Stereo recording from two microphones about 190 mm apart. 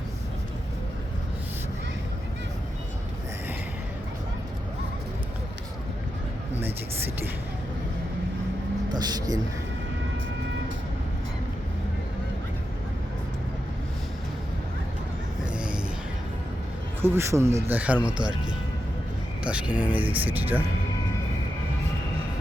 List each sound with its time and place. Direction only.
9.0 s a man's voice: 20° right (ahead or behind)
15.5 s a sound: 5° right (ahead or behind)
17.0 s speech: 15° right (ahead or behind)